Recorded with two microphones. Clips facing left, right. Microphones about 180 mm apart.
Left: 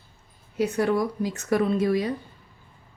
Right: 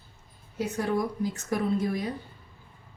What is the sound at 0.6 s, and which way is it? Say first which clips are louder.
A woman's voice: left 5 dB; 75° left (ahead or behind).